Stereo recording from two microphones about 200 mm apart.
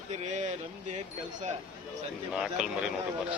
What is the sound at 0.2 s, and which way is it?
Speech, 35° right (ahead or behind).